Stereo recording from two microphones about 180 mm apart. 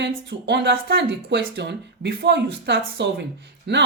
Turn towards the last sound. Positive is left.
turn(degrees=-75)  # may be behind; listen again after turning